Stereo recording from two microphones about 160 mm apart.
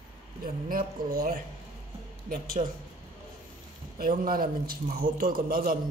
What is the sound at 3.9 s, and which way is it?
A man's voice, 65° right (ahead or behind).